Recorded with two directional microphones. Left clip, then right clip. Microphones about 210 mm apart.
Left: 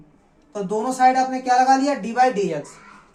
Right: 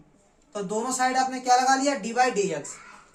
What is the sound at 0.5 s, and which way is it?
Speech, 20° right (ahead or behind).